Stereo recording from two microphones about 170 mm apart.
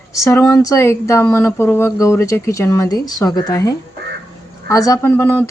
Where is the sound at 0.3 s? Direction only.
20° left (ahead or behind).